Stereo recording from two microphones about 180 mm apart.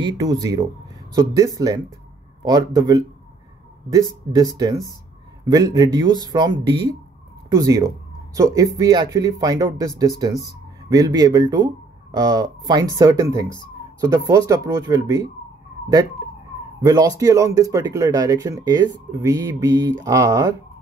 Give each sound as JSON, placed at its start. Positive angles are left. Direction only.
{"t": 0.0, "sound": "speech", "side_deg": -20}
{"t": 4.3, "sound": "speech", "side_deg": -20}
{"t": 16.8, "sound": "speech", "side_deg": -20}